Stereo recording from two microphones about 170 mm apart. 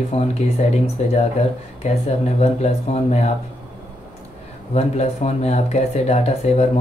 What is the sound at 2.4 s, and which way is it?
Speech, 40° left (ahead or behind).